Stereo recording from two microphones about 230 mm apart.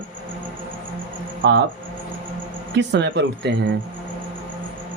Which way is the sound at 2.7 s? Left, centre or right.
Right.